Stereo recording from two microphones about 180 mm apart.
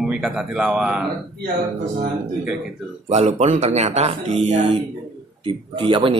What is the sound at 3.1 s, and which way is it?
Speech, 40° right (ahead or behind).